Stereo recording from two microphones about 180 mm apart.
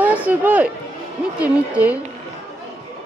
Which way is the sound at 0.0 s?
10° right (ahead or behind).